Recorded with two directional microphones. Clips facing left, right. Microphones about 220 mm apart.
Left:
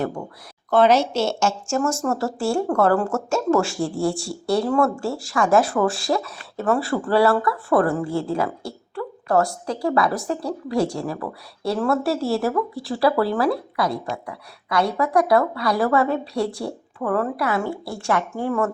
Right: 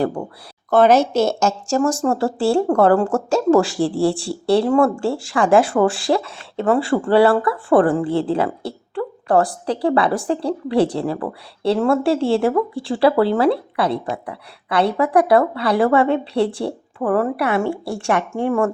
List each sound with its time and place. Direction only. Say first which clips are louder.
0.0 s speech: right 5 dB; 35° right (ahead or behind)
0.7 s speech: right 3 dB; 50° right (ahead or behind); by 18.7 s 25° right (ahead or behind)